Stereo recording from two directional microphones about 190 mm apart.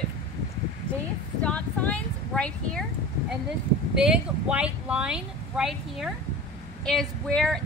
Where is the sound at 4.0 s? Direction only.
5° right (ahead or behind).